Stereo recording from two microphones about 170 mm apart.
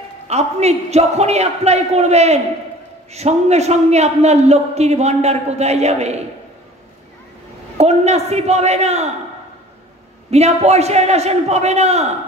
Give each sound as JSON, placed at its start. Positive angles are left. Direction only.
{"t": 0.3, "sound": "a man's voice", "side_deg": -40}
{"t": 7.7, "sound": "a man's voice", "side_deg": -40}
{"t": 10.3, "sound": "a man's voice", "side_deg": -40}